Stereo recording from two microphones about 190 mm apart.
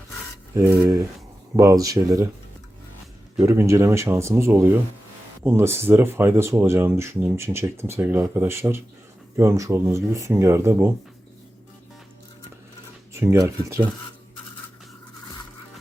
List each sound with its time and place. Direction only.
0.5 s speech: 15° right (ahead or behind)
3.4 s speech: 15° right (ahead or behind)
13.1 s speech: 15° right (ahead or behind)